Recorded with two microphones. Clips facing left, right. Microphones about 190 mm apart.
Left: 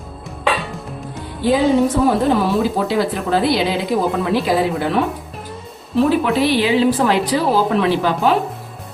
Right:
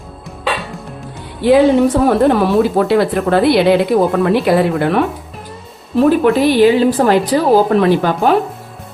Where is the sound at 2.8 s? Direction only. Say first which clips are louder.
Right 5 dB; 60° right (ahead or behind).